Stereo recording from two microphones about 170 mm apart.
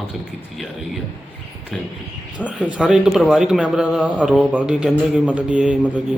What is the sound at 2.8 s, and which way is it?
Speech, 5° right (ahead or behind).